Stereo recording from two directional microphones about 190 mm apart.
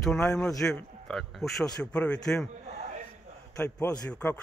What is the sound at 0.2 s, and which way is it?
Speech, 5° left (ahead or behind).